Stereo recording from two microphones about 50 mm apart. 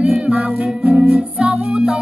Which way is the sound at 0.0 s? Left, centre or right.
Right.